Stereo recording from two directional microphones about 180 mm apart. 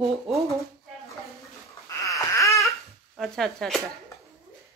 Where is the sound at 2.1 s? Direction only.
15° left (ahead or behind).